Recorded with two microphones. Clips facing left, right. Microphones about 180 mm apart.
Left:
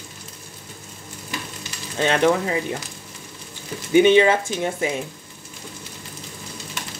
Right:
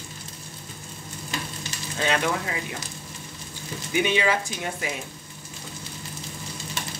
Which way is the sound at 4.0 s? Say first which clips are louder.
Left 9 dB; 25° left (ahead or behind).